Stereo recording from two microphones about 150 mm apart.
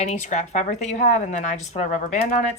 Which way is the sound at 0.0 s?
50° left (ahead or behind).